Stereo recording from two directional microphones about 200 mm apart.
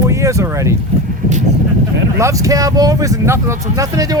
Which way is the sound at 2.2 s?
15° right (ahead or behind).